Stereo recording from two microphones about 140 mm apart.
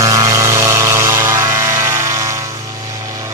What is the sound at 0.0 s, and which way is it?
Music, 20° right (ahead or behind).